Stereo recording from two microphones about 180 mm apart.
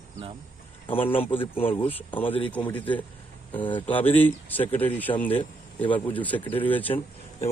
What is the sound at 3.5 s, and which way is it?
Speech, 25° left (ahead or behind).